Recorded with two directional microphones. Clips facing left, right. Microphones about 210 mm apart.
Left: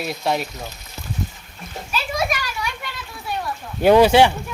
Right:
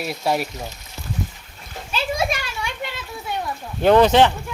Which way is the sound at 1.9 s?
25° right (ahead or behind).